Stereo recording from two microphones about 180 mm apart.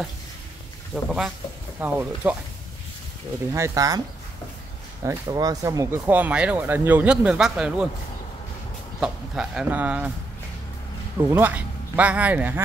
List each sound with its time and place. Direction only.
1.0 s speech: 5° right (ahead or behind)
3.5 s speech: 15° right (ahead or behind)
5.0 s speech: 20° right (ahead or behind); by 7.9 s 5° right (ahead or behind)
9.0 s speech: 5° right (ahead or behind)
11.2 s speech: 10° right (ahead or behind)